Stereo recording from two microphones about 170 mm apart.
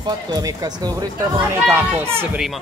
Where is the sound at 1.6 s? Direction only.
10° right (ahead or behind).